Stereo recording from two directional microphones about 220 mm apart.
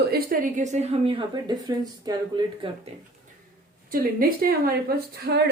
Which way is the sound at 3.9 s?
40° right (ahead or behind).